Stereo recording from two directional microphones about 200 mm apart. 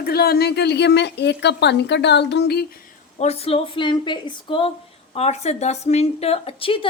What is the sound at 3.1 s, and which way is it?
A woman's voice, 30° left (ahead or behind).